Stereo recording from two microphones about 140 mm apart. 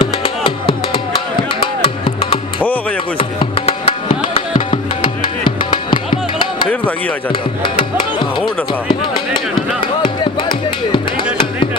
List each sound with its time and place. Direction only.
0.0 s music: 35° left (ahead or behind)
8.4 s speech: 35° left (ahead or behind)
9.6 s music: 35° left (ahead or behind)